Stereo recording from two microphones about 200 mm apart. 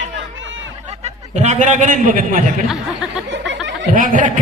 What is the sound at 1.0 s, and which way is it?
A man's voice, 35° right (ahead or behind).